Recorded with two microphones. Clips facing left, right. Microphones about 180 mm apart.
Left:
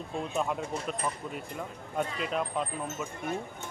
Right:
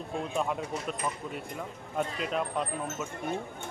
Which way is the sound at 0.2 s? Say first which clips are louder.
Even; centre (ahead or behind).